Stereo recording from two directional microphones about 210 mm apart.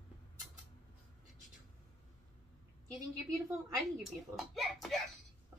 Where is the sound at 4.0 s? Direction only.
Centre (ahead or behind).